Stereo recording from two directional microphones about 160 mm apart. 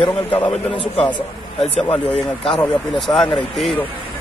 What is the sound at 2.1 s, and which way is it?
Speech, 35° left (ahead or behind).